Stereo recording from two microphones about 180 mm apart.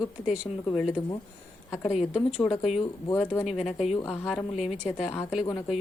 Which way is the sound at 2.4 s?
35° left (ahead or behind).